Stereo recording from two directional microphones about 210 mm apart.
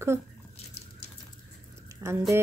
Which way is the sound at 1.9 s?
10° right (ahead or behind).